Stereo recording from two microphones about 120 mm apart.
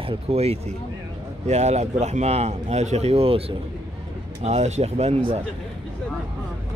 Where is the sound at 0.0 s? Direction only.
55° right (ahead or behind).